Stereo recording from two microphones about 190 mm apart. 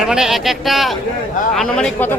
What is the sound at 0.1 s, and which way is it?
Speech, centre (ahead or behind).